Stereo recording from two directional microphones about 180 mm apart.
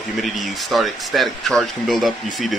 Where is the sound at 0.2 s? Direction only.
Centre (ahead or behind).